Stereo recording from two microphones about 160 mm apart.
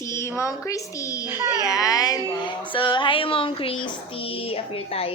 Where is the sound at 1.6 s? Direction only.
20° left (ahead or behind).